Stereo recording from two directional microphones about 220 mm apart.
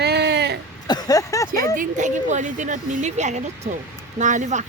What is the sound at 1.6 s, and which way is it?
A woman's voice, 35° right (ahead or behind).